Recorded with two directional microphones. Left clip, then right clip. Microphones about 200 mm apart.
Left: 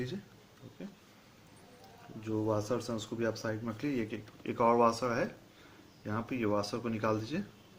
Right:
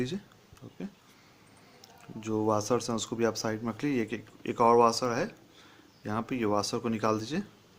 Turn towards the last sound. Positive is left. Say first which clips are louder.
# right 4 dB
turn(degrees=-45)  # may be behind; listen again after turning